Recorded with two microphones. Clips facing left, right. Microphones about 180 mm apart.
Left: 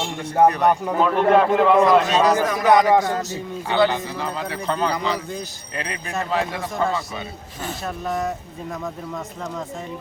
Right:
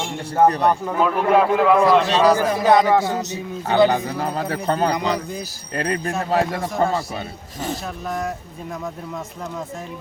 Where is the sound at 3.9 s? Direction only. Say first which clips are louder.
Right 4 dB; 45° right (ahead or behind).